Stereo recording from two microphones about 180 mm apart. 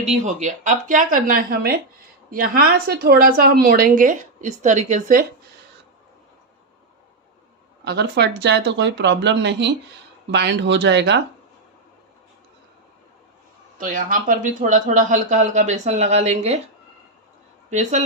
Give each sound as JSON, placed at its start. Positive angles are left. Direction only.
{"t": 0.0, "sound": "a woman's voice", "side_deg": -40}
{"t": 7.9, "sound": "speech", "side_deg": -70}
{"t": 13.7, "sound": "a woman's voice", "side_deg": -45}
{"t": 17.7, "sound": "speech", "side_deg": -40}